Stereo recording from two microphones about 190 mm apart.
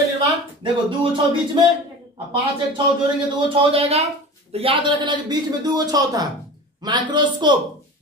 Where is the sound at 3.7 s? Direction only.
35° right (ahead or behind).